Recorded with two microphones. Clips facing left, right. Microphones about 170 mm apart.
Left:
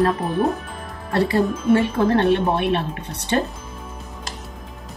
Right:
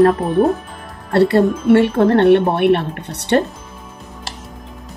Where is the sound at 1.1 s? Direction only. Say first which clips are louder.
Right 6 dB; 70° right (ahead or behind).